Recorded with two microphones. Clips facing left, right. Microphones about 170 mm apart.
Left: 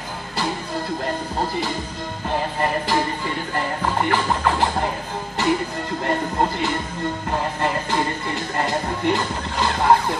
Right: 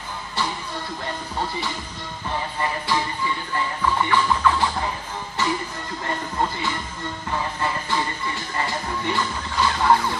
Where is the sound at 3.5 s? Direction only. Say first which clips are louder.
Even; 50° left (ahead or behind).